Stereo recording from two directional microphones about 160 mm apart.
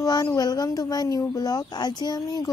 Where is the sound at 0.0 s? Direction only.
25° left (ahead or behind).